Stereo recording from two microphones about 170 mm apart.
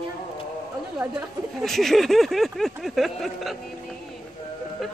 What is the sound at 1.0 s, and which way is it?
Speech, 15° right (ahead or behind).